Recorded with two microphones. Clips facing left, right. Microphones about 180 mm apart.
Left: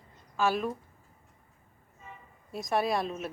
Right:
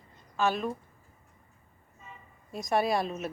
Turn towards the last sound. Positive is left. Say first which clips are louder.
# right 1 dB
turn(degrees=0)  # may be behind; listen again after turning